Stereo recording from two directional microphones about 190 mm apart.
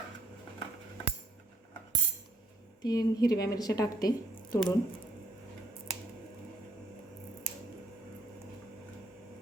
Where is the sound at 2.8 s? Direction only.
20° left (ahead or behind).